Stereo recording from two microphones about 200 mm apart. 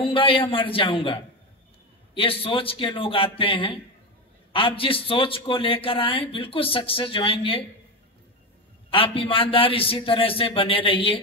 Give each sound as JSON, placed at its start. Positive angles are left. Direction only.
{"t": 0.0, "sound": "a man's voice", "side_deg": 25}
{"t": 8.9, "sound": "a man's voice", "side_deg": 25}